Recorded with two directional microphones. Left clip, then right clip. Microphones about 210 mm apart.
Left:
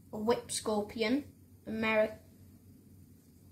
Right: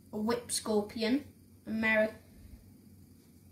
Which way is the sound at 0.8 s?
15° left (ahead or behind).